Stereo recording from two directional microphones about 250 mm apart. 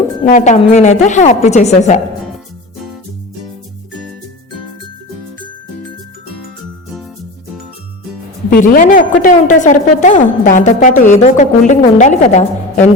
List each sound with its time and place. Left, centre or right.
0.3 s a woman's voice: left
8.4 s a woman's voice: left